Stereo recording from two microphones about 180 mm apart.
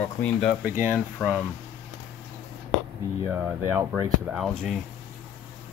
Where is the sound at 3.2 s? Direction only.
10° right (ahead or behind).